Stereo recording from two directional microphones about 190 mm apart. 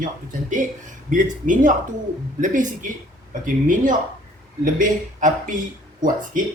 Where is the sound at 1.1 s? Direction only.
45° right (ahead or behind).